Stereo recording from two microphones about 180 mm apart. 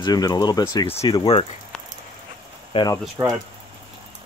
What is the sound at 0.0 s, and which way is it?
Speech, 20° left (ahead or behind).